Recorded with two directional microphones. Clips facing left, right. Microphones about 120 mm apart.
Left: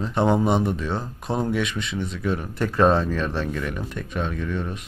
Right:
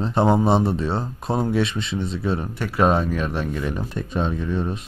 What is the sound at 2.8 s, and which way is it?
Speech, 10° right (ahead or behind).